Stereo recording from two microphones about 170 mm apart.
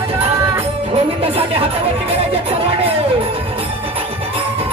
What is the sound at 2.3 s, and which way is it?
Music, 35° right (ahead or behind).